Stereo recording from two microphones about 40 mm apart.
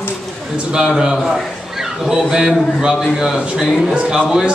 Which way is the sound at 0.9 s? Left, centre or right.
Centre.